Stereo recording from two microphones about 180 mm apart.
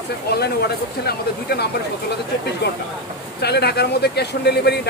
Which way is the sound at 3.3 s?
65° left (ahead or behind).